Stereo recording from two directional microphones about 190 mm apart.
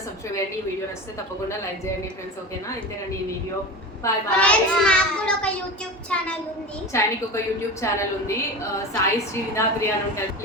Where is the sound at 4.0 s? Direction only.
5° left (ahead or behind).